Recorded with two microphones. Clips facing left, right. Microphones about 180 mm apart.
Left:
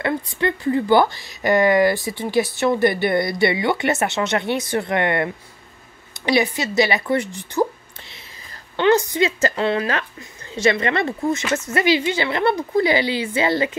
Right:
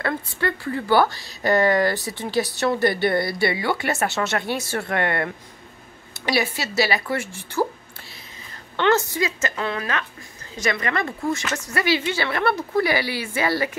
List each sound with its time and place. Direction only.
0.0 s a woman's voice: 20° left (ahead or behind)
6.3 s a woman's voice: 20° left (ahead or behind)
8.7 s a woman's voice: 15° left (ahead or behind)
9.2 s a woman's voice: 30° left (ahead or behind)